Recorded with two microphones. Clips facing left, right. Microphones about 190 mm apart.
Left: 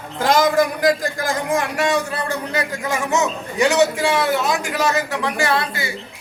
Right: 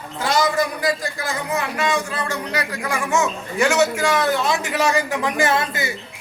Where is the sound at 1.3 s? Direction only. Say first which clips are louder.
Left 3 dB; 45° left (ahead or behind); by 5.9 s 20° right (ahead or behind).